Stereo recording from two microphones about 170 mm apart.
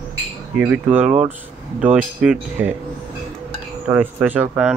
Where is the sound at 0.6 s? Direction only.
10° right (ahead or behind).